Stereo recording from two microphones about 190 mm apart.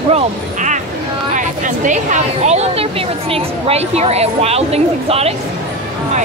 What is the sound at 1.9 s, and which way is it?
A woman's voice, 40° right (ahead or behind).